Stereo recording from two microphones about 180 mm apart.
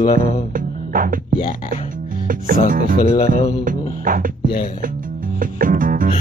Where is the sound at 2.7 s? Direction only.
50° right (ahead or behind).